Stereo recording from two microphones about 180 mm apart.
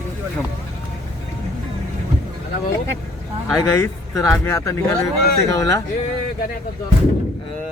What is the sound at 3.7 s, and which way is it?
Speech, 15° left (ahead or behind).